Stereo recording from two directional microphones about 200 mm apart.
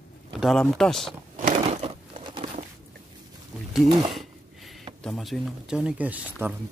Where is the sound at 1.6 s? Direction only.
30° right (ahead or behind).